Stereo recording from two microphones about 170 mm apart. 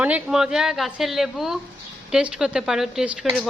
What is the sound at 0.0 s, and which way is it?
A man's voice, 5° right (ahead or behind).